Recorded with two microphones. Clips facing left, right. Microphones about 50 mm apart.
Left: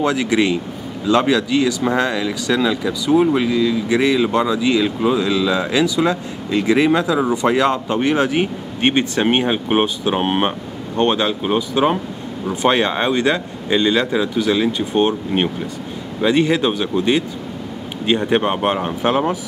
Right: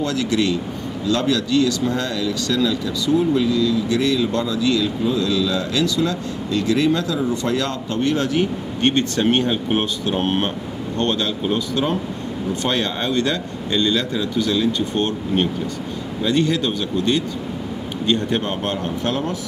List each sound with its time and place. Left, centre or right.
0.0 s speech: left
3.1 s speech: left
3.4 s speech: left